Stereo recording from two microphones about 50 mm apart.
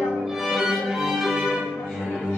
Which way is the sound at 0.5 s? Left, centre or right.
Centre.